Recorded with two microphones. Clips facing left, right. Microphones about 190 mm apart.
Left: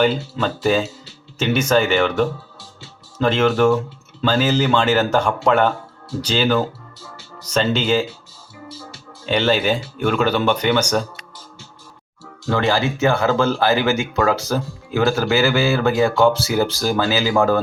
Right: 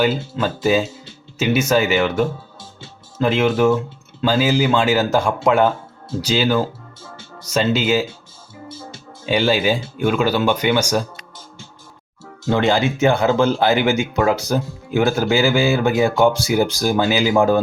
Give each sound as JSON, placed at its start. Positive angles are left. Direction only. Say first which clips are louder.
{"t": 0.0, "sound": "speech", "louder": "even", "side_deg": -5}
{"t": 9.2, "sound": "speech", "louder": "right 1 dB", "side_deg": -10}
{"t": 12.5, "sound": "speech", "louder": "right 2 dB", "side_deg": -20}